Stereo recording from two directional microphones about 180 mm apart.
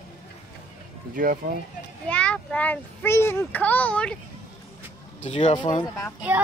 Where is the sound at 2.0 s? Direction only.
5° left (ahead or behind).